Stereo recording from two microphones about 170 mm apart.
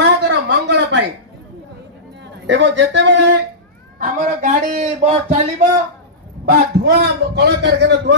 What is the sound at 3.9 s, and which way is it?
A man's voice, 55° right (ahead or behind).